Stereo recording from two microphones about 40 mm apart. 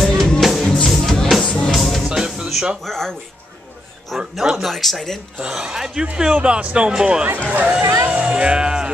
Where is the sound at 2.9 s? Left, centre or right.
Centre.